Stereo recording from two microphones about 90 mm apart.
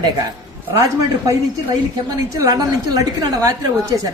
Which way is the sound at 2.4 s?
45° right (ahead or behind).